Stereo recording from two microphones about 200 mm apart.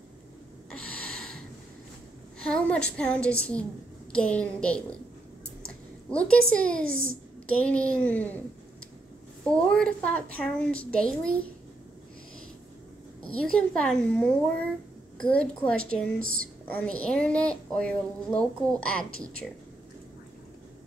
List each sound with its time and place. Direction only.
1.0 s snort: 5° left (ahead or behind)
2.4 s a woman's voice: 5° left (ahead or behind)
6.0 s a woman's voice: 5° left (ahead or behind)
9.7 s a woman's voice: 5° left (ahead or behind)
13.3 s a woman's voice: 5° left (ahead or behind)
16.2 s speech: 45° right (ahead or behind)
16.6 s a woman's voice: 5° left (ahead or behind)